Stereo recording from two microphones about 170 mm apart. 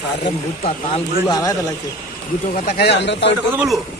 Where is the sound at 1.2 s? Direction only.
25° left (ahead or behind).